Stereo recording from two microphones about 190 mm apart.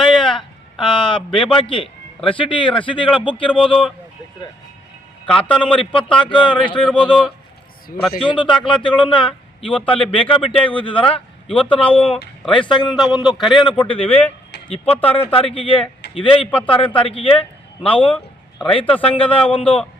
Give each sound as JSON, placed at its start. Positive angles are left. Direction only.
{"t": 0.0, "sound": "a sound", "side_deg": 25}
{"t": 3.2, "sound": "speech", "side_deg": 25}
{"t": 3.6, "sound": "a man's voice", "side_deg": 0}
{"t": 5.2, "sound": "a man's voice", "side_deg": 5}
{"t": 6.2, "sound": "speech", "side_deg": 25}
{"t": 6.7, "sound": "a man's voice", "side_deg": 5}
{"t": 8.2, "sound": "a man's voice", "side_deg": 25}